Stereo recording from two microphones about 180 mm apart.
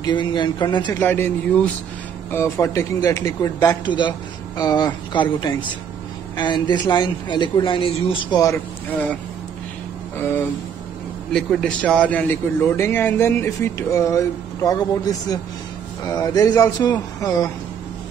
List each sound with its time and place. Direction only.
0.0 s a man's voice: 25° left (ahead or behind)
0.9 s a man's voice: 10° left (ahead or behind)
11.3 s a man's voice: 5° left (ahead or behind); by 17.5 s 20° left (ahead or behind)